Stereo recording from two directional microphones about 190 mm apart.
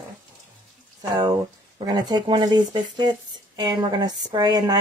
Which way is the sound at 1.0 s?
20° right (ahead or behind).